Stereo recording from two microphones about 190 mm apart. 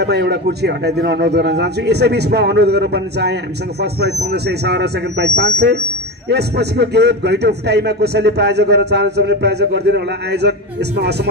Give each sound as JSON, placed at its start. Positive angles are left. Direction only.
{"t": 0.0, "sound": "a man's voice", "side_deg": -60}